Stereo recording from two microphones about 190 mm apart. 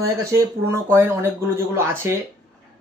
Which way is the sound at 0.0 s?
15° right (ahead or behind).